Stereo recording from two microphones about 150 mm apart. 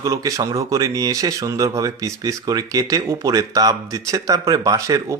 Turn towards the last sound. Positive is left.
turn(degrees=-25)  # may be behind; listen again after turning